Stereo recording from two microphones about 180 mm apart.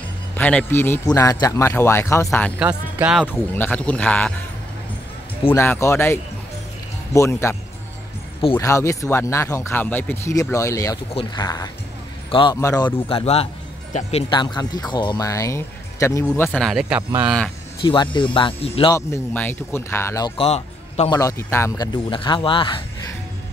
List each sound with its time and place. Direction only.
0.4 s speech: 5° left (ahead or behind)
3.0 s speech: 5° right (ahead or behind)
3.3 s speech: 10° left (ahead or behind)
5.5 s speech: 15° left (ahead or behind)
7.2 s speech: 15° left (ahead or behind)
8.5 s speech: 15° left (ahead or behind); by 14.1 s 40° left (ahead or behind)
14.3 s speech: 25° left (ahead or behind); by 16.8 s 5° left (ahead or behind)
16.9 s speech: 10° right (ahead or behind)
17.8 s speech: 25° left (ahead or behind)
18.9 s speech: 15° left (ahead or behind)
20.4 s music: 35° left (ahead or behind)
21.1 s speech: 15° left (ahead or behind)